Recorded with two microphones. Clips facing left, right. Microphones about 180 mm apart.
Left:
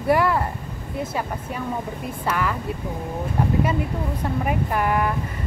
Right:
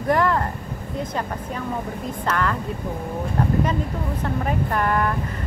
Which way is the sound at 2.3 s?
10° left (ahead or behind).